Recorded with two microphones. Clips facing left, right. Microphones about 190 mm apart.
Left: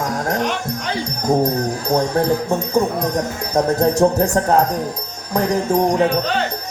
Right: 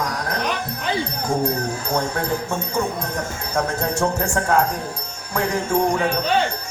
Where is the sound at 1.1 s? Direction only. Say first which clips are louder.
Left 9 dB; 40° left (ahead or behind).